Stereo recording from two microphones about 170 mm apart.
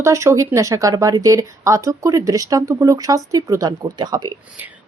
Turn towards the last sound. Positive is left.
turn(degrees=-25)  # may be behind; listen again after turning